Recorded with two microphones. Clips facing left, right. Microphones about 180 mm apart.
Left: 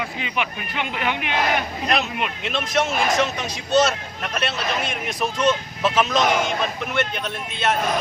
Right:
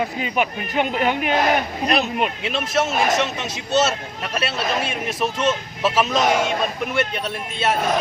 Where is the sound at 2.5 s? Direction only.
5° right (ahead or behind).